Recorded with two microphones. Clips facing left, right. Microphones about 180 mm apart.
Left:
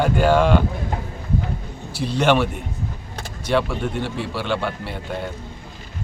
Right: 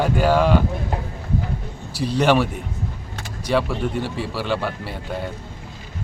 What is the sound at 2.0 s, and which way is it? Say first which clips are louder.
Speech: right 2 dB; 35° right (ahead or behind).